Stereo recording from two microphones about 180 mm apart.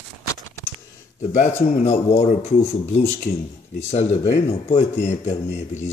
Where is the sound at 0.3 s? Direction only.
15° left (ahead or behind).